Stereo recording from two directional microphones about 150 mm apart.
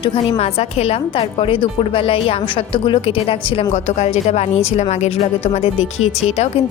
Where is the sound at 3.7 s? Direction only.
50° left (ahead or behind).